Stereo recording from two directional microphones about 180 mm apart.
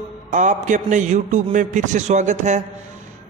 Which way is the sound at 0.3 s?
45° right (ahead or behind).